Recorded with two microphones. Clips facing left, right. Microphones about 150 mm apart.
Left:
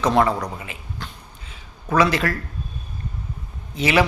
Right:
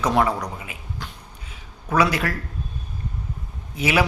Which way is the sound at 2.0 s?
10° right (ahead or behind).